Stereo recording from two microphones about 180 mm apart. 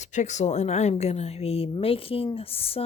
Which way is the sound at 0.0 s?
40° left (ahead or behind).